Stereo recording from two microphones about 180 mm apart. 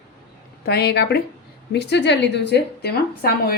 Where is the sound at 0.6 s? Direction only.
60° left (ahead or behind).